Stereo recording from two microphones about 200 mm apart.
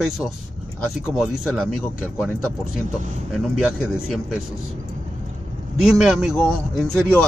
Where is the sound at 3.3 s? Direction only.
Centre (ahead or behind).